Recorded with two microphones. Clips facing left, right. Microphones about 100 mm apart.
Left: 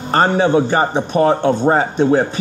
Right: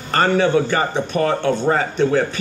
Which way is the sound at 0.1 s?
20° left (ahead or behind).